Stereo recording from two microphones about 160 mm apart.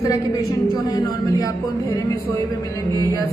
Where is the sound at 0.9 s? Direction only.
25° left (ahead or behind).